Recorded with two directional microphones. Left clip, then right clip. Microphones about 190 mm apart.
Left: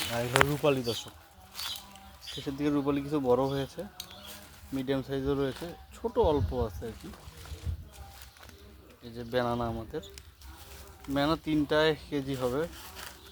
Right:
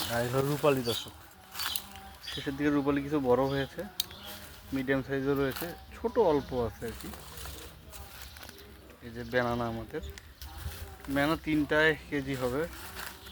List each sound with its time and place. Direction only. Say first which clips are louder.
0.0 s speech: left 4 dB; 5° left (ahead or behind)
2.4 s speech: right 1 dB; 10° left (ahead or behind)
9.1 s speech: even; 10° left (ahead or behind)
11.1 s speech: even; 15° left (ahead or behind)